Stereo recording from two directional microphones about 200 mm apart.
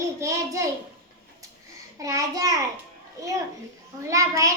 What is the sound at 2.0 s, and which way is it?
Speech, 15° right (ahead or behind).